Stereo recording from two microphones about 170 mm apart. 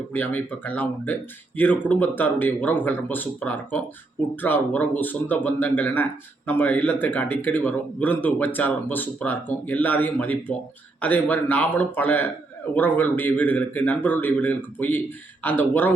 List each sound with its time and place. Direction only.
0.1 s speech: 10° left (ahead or behind)